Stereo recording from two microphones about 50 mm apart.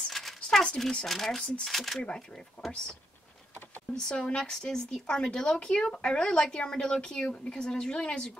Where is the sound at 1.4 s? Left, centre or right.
Left.